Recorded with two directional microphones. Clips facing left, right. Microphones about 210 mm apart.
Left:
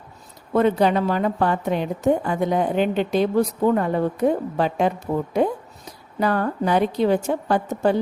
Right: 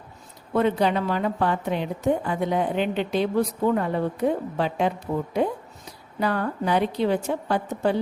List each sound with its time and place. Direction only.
0.5 s a woman's voice: 45° left (ahead or behind)
6.1 s a woman's voice: 45° left (ahead or behind)